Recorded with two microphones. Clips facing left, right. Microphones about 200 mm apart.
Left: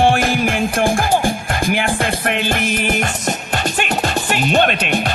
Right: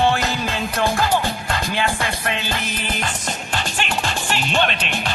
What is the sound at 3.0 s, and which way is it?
Music, 45° left (ahead or behind).